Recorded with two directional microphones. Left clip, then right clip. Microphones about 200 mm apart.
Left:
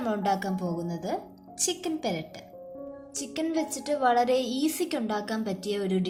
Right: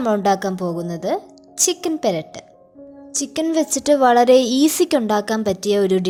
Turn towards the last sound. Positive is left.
turn(degrees=-50)  # may be behind; listen again after turning